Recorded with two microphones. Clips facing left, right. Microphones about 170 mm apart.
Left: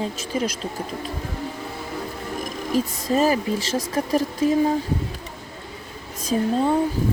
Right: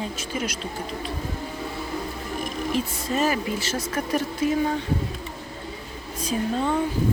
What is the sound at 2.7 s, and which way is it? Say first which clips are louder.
Speech: left 6 dB; 35° left (ahead or behind).